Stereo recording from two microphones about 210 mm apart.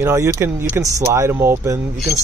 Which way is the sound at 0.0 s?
15° right (ahead or behind).